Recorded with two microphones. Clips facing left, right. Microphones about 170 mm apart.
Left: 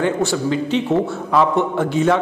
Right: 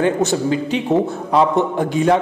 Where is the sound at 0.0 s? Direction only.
20° right (ahead or behind).